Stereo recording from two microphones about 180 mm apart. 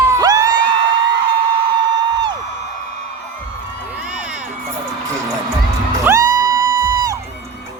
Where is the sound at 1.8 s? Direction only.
25° right (ahead or behind).